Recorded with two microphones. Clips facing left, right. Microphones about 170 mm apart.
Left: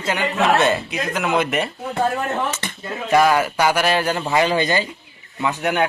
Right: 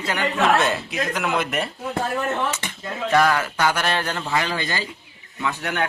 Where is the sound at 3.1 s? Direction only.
15° left (ahead or behind).